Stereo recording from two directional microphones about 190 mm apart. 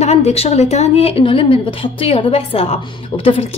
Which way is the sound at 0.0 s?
35° left (ahead or behind).